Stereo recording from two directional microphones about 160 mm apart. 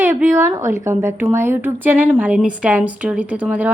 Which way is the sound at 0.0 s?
15° right (ahead or behind).